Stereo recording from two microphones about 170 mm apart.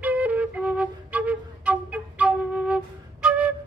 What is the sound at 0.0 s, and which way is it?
Flute, 10° right (ahead or behind).